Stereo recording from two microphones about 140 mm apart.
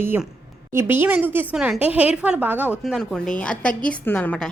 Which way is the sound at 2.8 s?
Centre (ahead or behind).